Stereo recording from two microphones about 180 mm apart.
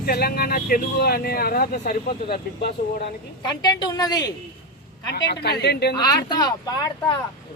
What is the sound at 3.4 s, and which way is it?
Speech, 25° left (ahead or behind).